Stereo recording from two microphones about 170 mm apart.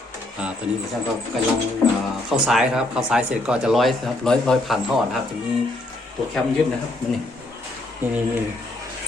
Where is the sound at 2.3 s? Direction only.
5° right (ahead or behind).